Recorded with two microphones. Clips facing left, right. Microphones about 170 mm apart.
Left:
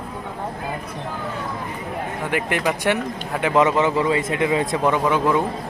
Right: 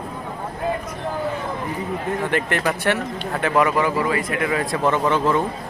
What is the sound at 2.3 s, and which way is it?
Speech, 10° left (ahead or behind).